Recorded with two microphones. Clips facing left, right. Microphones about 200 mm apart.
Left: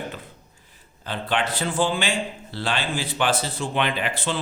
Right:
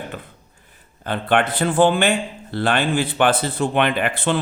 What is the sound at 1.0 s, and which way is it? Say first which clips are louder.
A man's voice: right 6 dB; 55° right (ahead or behind).